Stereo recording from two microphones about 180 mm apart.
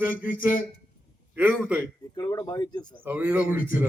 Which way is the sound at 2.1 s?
20° left (ahead or behind).